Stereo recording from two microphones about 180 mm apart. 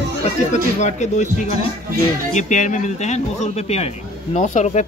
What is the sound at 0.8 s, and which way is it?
Speech, 40° left (ahead or behind).